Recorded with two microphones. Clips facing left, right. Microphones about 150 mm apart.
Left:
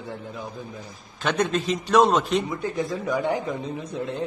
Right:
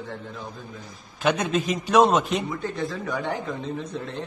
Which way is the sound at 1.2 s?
5° right (ahead or behind).